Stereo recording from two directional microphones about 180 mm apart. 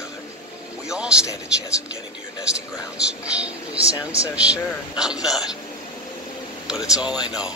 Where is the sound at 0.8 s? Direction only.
5° right (ahead or behind).